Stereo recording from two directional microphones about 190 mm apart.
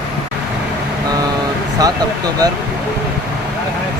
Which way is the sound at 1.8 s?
20° right (ahead or behind).